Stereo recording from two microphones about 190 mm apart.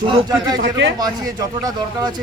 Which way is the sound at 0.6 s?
80° right.